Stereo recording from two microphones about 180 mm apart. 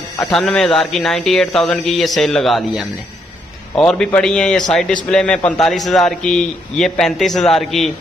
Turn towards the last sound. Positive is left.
turn(degrees=0)  # may be behind; listen again after turning